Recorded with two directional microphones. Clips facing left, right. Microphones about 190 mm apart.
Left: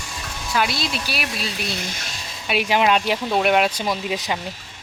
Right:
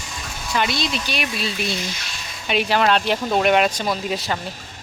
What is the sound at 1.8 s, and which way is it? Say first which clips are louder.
Speech: right 1 dB; 50° left (ahead or behind).